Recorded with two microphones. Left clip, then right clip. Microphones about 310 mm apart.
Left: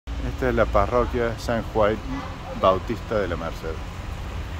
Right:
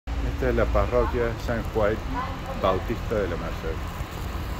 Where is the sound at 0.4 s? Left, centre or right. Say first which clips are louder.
Left 3 dB; centre.